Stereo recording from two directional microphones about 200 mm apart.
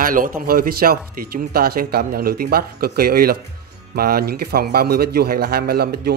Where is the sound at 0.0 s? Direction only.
45° right (ahead or behind).